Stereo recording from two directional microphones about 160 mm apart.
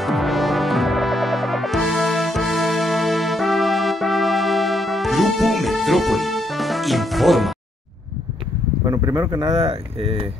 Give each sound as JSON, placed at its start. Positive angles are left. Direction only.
{"t": 0.0, "sound": "music", "side_deg": 0}
{"t": 8.8, "sound": "speech", "side_deg": -20}
{"t": 9.6, "sound": "speech", "side_deg": -40}